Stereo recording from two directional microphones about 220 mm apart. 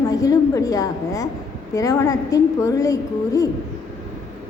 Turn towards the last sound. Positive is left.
turn(degrees=15)  # may be behind; listen again after turning